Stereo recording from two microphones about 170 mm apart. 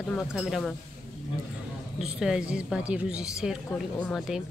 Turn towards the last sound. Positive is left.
turn(degrees=0)  # may be behind; listen again after turning